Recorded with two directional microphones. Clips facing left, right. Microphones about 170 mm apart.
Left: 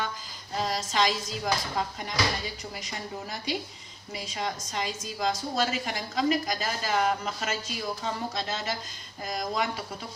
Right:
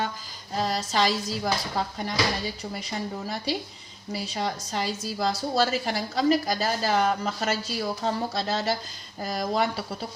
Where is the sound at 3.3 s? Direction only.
30° right (ahead or behind).